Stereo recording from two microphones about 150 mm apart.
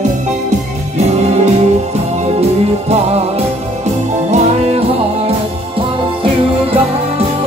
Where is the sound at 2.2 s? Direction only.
45° right (ahead or behind).